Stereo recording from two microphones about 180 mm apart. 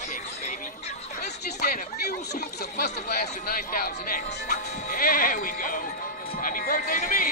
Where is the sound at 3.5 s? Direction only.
50° left (ahead or behind).